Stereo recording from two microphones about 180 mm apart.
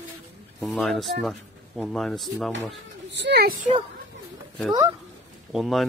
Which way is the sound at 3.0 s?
75° right (ahead or behind).